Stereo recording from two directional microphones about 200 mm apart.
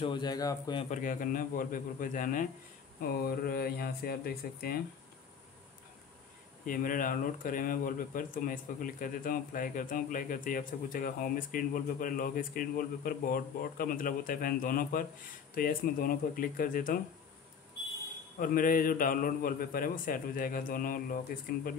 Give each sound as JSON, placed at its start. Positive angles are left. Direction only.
{"t": 0.0, "sound": "a man's voice", "side_deg": 20}
{"t": 0.8, "sound": "speech", "side_deg": 40}
{"t": 6.6, "sound": "speech", "side_deg": 45}
{"t": 18.4, "sound": "speech", "side_deg": 45}